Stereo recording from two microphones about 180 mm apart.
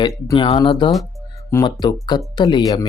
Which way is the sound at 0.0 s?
25° left (ahead or behind).